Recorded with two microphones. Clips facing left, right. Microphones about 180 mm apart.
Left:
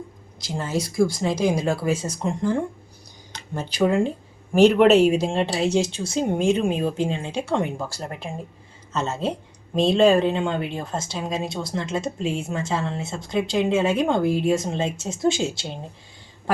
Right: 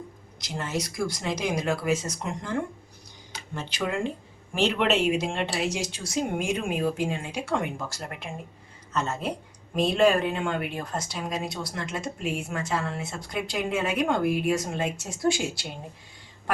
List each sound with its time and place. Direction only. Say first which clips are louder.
0.3 s speech: left 4 dB; 30° left (ahead or behind)
3.5 s speech: left 9 dB; 35° left (ahead or behind)